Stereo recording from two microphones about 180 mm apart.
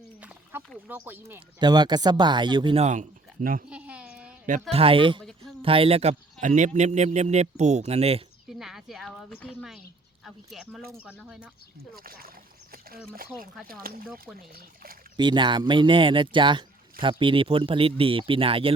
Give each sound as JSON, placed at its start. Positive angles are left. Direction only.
{"t": 0.5, "sound": "speech", "side_deg": -10}
{"t": 1.5, "sound": "speech", "side_deg": -25}
{"t": 2.8, "sound": "speech", "side_deg": -40}
{"t": 3.7, "sound": "a sound", "side_deg": -5}
{"t": 4.7, "sound": "a man's voice", "side_deg": -30}
{"t": 8.5, "sound": "a woman's voice", "side_deg": 0}
{"t": 11.9, "sound": "speech", "side_deg": -55}
{"t": 13.8, "sound": "speech", "side_deg": -55}
{"t": 15.1, "sound": "speech", "side_deg": -25}